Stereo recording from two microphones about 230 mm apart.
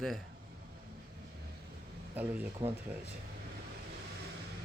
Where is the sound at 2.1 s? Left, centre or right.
Centre.